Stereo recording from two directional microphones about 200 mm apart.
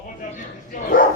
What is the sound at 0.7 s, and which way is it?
Dog, 45° left (ahead or behind).